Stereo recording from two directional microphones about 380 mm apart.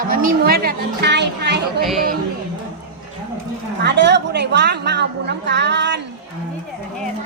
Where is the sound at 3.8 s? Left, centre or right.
Right.